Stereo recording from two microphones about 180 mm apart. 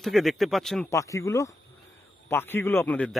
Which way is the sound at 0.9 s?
15° left (ahead or behind).